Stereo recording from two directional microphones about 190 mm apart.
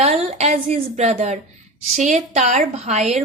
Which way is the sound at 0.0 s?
35° right (ahead or behind).